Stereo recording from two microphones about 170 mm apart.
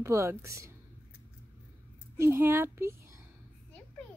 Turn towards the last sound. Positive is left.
turn(degrees=-15)  # may be behind; listen again after turning